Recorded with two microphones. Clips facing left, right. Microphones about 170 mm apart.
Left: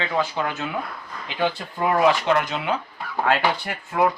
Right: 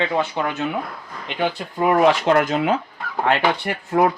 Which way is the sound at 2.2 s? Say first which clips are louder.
Right 5 dB; 50° right (ahead or behind).